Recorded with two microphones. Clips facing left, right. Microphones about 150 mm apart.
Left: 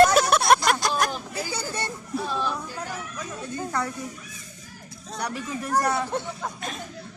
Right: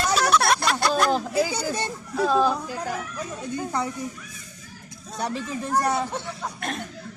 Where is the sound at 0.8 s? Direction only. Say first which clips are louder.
Right 4 dB; 65° right (ahead or behind).